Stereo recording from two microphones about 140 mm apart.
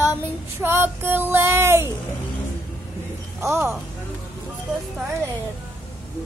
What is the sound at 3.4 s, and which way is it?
Child singing, 20° right (ahead or behind).